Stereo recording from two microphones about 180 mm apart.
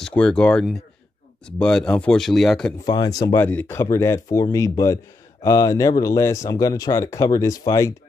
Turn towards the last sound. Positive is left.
turn(degrees=15)  # may be behind; listen again after turning